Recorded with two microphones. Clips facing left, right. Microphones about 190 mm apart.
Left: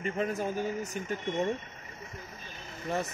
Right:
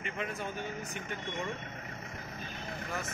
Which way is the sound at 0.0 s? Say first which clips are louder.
Left 7 dB; 40° left (ahead or behind).